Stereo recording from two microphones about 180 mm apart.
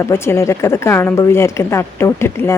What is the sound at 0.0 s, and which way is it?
Speech, 15° left (ahead or behind).